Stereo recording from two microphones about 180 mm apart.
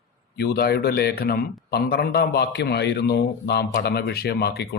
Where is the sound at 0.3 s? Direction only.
60° left (ahead or behind).